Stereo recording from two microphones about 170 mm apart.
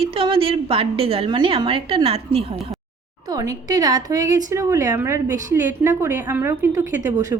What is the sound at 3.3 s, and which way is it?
A woman's voice, 20° right (ahead or behind).